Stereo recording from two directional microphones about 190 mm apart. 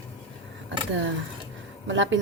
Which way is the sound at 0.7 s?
75° right (ahead or behind).